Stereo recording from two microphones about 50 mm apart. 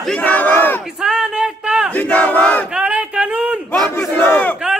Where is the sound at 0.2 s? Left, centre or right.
Left.